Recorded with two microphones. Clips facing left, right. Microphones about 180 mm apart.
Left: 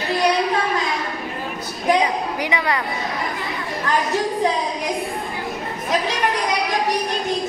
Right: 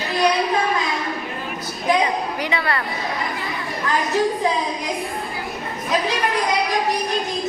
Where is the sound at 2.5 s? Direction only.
15° left (ahead or behind).